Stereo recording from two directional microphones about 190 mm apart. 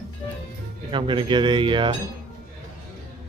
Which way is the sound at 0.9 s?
25° right (ahead or behind).